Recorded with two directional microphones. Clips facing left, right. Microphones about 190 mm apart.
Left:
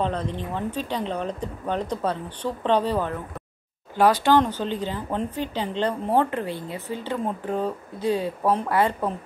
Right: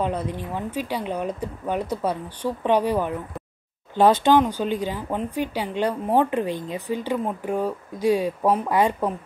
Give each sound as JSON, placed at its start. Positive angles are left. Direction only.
{"t": 0.0, "sound": "speech", "side_deg": -10}
{"t": 3.9, "sound": "speech", "side_deg": -25}